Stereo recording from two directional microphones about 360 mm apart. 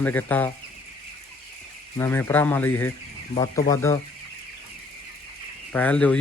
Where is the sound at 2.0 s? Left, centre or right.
Centre.